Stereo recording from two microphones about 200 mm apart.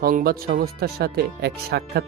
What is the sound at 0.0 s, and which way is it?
Speech, 45° right (ahead or behind).